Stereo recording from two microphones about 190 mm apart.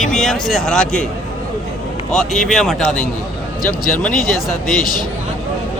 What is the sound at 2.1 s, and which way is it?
Speech, centre (ahead or behind).